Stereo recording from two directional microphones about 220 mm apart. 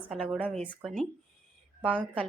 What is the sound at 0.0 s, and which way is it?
Speech, 5° left (ahead or behind).